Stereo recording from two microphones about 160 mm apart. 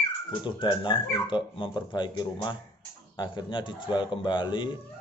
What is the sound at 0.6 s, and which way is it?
Speech, 30° left (ahead or behind).